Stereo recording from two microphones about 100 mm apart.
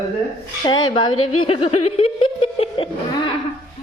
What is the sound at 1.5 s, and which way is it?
Snicker, 85° left.